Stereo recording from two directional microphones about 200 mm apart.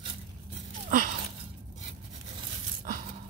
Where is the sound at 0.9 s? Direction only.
40° right (ahead or behind).